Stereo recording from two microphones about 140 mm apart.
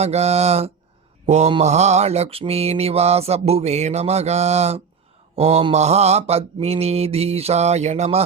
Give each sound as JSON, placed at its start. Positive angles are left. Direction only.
{"t": 0.0, "sound": "mantra", "side_deg": -50}